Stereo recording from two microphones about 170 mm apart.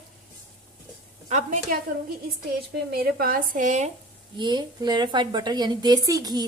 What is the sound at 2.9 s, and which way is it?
Speech, 60° right (ahead or behind).